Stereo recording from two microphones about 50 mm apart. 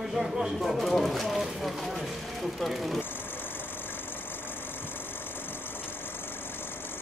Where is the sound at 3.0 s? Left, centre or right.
Left.